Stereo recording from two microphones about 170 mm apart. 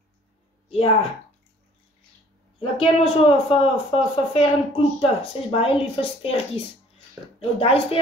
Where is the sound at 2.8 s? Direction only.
35° left (ahead or behind).